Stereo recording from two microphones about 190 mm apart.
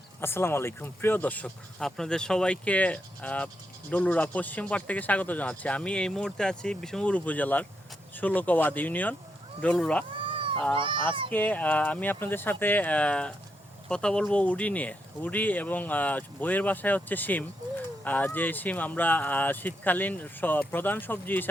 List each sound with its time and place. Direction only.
0.2 s speech: 10° left (ahead or behind)
10.1 s cat: 25° right (ahead or behind)
10.8 s speech: 25° right (ahead or behind)
11.3 s speech: 10° left (ahead or behind)